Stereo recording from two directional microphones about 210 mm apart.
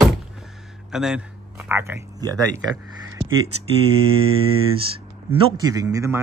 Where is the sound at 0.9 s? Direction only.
Centre (ahead or behind).